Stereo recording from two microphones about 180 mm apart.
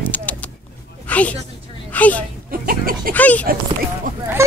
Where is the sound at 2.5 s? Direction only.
55° right (ahead or behind).